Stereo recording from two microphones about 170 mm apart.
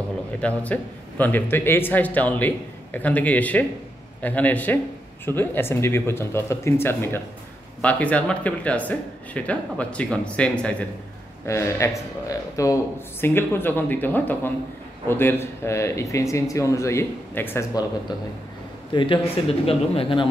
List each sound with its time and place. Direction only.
0.4 s a man's voice: 10° left (ahead or behind)
18.9 s speech: 30° left (ahead or behind)